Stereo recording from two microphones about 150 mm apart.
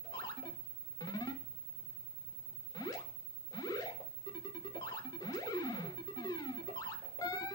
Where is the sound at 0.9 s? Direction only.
25° left (ahead or behind).